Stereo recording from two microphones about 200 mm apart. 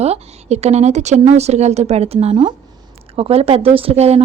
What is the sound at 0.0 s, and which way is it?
Speech, 30° right (ahead or behind).